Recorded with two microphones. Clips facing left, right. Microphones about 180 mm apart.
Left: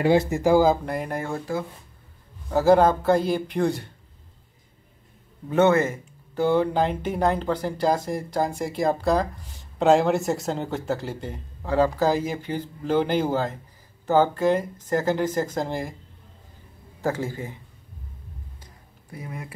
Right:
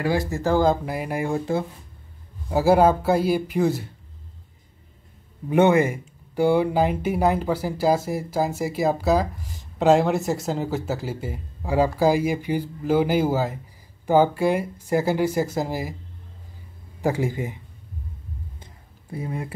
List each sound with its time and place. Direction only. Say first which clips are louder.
0.0 s speech: left 4 dB; 20° left (ahead or behind)
0.8 s speech: right 2 dB; 5° right (ahead or behind)
2.5 s speech: even; 10° right (ahead or behind)
5.5 s speech: right 2 dB; 15° right (ahead or behind)
17.0 s speech: right 3 dB; 15° right (ahead or behind)
18.6 s a sound: right 2 dB; 25° right (ahead or behind)